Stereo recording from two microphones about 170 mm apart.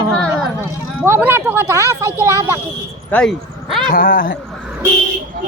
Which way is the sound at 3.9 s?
55° left (ahead or behind).